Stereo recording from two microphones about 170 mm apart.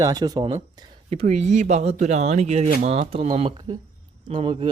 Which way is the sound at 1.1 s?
45° right (ahead or behind).